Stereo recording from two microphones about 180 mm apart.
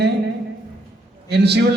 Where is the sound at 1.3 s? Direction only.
65° right (ahead or behind).